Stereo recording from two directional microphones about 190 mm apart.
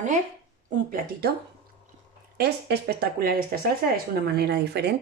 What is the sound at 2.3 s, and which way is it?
Speech, 55° right (ahead or behind).